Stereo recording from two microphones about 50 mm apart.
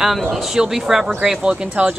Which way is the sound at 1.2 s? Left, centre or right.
Centre.